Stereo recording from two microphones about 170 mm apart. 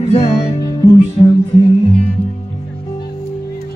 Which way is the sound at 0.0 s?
35° left (ahead or behind).